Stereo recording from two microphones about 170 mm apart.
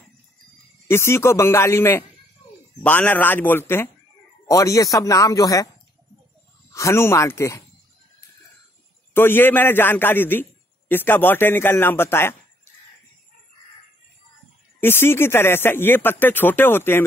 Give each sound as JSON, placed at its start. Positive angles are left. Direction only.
{"t": 0.8, "sound": "speech", "side_deg": 15}
{"t": 6.7, "sound": "speech", "side_deg": 15}
{"t": 9.1, "sound": "speech", "side_deg": 10}
{"t": 14.8, "sound": "speech", "side_deg": 15}